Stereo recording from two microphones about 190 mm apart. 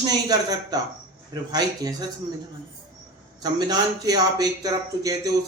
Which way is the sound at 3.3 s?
20° right (ahead or behind).